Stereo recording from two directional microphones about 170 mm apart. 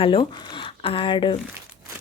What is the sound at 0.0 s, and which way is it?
A woman's voice, 30° left (ahead or behind).